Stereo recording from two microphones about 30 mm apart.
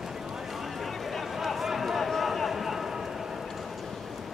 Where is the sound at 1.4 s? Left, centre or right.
Centre.